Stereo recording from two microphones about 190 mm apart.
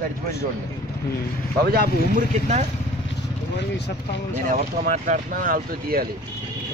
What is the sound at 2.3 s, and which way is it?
Speech, 40° right (ahead or behind).